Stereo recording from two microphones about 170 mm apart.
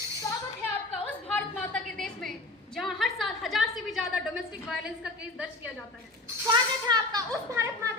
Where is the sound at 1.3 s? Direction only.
10° left (ahead or behind).